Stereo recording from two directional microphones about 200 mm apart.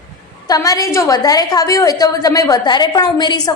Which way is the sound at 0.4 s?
20° left (ahead or behind).